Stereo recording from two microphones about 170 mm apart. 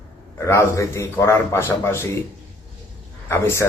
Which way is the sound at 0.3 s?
15° left (ahead or behind).